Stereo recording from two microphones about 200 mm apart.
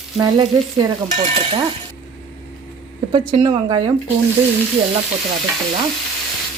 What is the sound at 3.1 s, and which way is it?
Speech, 25° right (ahead or behind).